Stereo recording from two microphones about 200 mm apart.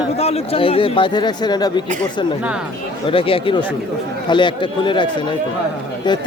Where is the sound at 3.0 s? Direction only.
25° left (ahead or behind).